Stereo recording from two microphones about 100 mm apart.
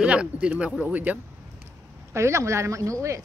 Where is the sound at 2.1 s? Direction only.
30° right (ahead or behind).